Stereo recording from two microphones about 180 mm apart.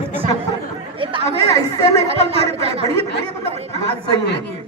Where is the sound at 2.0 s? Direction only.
35° right (ahead or behind).